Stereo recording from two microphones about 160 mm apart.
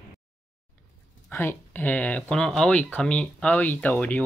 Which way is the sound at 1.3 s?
15° left (ahead or behind).